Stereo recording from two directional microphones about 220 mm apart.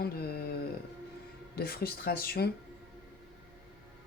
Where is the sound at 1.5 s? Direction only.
45° left (ahead or behind).